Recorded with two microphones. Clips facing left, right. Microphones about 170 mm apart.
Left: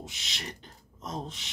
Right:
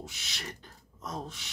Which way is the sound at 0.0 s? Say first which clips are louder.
Left 1 dB; 20° left (ahead or behind).